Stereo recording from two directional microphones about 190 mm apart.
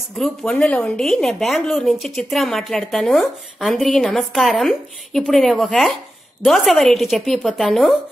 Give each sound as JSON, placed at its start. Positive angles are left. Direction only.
{"t": 0.2, "sound": "speech", "side_deg": 5}